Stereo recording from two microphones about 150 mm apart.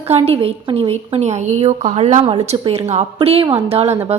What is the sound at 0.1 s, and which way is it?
Speech, 40° right (ahead or behind).